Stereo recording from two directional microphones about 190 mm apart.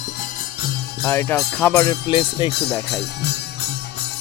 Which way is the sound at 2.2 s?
30° left (ahead or behind).